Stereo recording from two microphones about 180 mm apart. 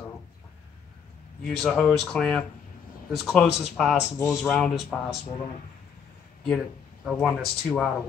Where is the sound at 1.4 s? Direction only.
5° left (ahead or behind).